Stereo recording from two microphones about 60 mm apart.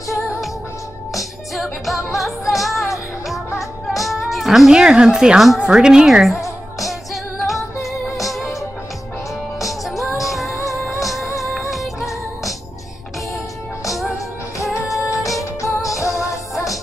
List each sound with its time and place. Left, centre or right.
1.1 s music: centre
4.0 s speech: centre
6.8 s music: centre
9.7 s music: centre
11.7 s music: centre
13.8 s music: centre
15.0 s music: left